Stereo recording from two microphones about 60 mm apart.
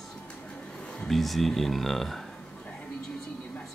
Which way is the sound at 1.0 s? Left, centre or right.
Centre.